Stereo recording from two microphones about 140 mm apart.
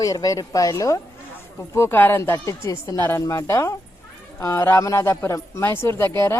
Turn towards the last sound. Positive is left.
turn(degrees=20)  # may be behind; listen again after turning